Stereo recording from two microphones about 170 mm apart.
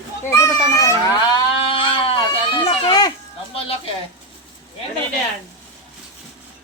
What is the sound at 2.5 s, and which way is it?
Speech, 25° left (ahead or behind).